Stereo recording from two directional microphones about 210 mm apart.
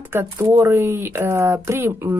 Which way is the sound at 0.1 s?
10° right (ahead or behind).